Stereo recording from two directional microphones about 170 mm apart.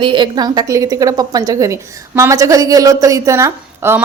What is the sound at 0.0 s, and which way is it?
A woman's voice, 30° right (ahead or behind).